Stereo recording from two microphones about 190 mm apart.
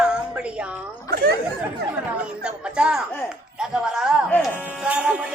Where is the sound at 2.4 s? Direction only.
5° right (ahead or behind).